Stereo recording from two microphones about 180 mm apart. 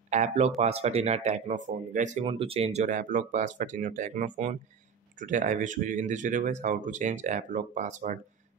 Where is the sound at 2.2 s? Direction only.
30° right (ahead or behind).